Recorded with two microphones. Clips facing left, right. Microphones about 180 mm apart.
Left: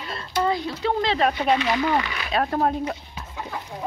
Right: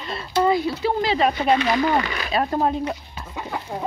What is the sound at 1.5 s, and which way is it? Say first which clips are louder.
Speech: right 2 dB; 40° right (ahead or behind).